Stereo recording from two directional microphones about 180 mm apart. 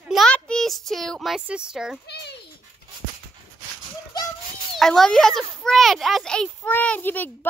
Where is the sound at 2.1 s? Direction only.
70° left (ahead or behind).